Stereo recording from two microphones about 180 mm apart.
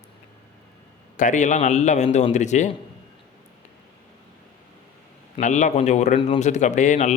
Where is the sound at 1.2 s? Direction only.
45° left (ahead or behind).